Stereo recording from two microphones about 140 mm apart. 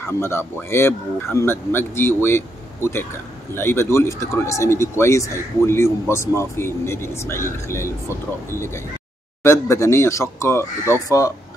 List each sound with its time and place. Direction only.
0.2 s a man's voice: 15° left (ahead or behind)